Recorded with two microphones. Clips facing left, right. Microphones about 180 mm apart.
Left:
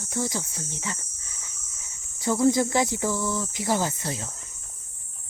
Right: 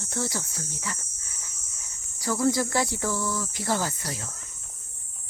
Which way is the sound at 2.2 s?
20° left (ahead or behind).